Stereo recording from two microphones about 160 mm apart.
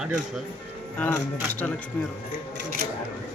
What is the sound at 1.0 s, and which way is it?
Speech, 10° left (ahead or behind).